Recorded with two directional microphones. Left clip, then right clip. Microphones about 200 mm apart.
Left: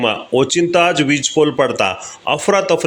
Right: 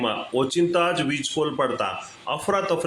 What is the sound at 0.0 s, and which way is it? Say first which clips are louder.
Speech: left 8 dB; 35° left (ahead or behind).